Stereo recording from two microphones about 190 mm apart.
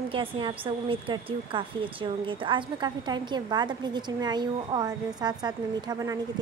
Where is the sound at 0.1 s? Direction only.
25° right (ahead or behind).